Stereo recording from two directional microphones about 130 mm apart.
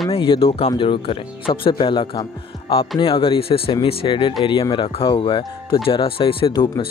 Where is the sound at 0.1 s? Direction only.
45° left (ahead or behind).